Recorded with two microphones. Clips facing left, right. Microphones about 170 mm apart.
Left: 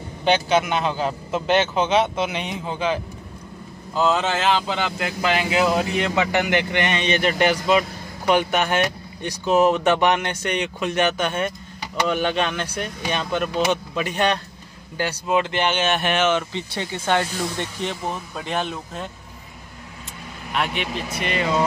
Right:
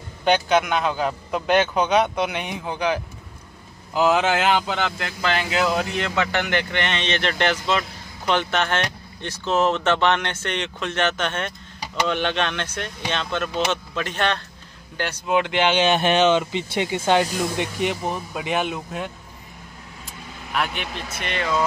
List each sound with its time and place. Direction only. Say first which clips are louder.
0.2 s a man's voice: even; centre (ahead or behind)
3.9 s speech: right 2 dB; 5° right (ahead or behind); by 14.4 s 10° left (ahead or behind)
15.2 s a man's voice: even; centre (ahead or behind)
15.9 s speech: right 3 dB; 20° right (ahead or behind)
20.5 s a man's voice: left 2 dB; centre (ahead or behind)